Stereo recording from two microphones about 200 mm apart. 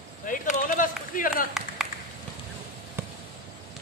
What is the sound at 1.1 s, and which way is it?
Run, 45° left (ahead or behind).